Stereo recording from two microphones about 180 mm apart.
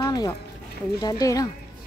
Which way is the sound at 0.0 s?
20° left (ahead or behind).